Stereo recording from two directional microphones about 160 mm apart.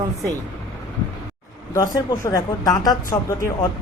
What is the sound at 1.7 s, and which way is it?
Speech, 20° left (ahead or behind).